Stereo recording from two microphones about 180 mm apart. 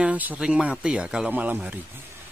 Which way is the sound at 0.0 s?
10° right (ahead or behind).